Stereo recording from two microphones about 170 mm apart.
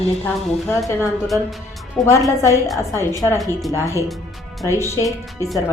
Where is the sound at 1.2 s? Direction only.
Centre (ahead or behind).